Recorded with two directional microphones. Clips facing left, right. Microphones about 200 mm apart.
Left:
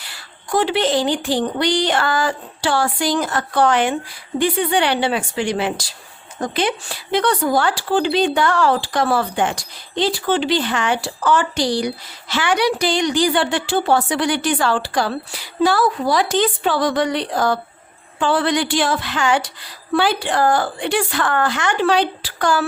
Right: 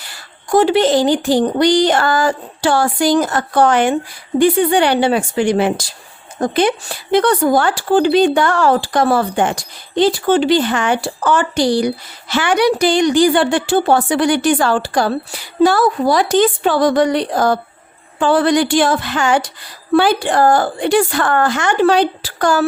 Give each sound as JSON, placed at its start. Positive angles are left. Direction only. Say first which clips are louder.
{"t": 0.1, "sound": "speech", "louder": "right 6 dB", "side_deg": -45}